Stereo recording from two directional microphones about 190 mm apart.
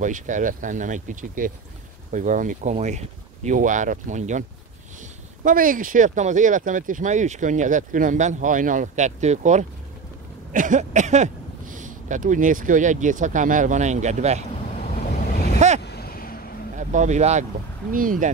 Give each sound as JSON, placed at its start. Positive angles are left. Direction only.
{"t": 0.0, "sound": "speech", "side_deg": -40}
{"t": 15.8, "sound": "vehicle", "side_deg": 60}
{"t": 16.7, "sound": "speech", "side_deg": -40}